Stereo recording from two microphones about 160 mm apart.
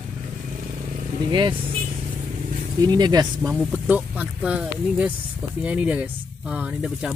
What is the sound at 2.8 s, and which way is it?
Speech, 25° right (ahead or behind).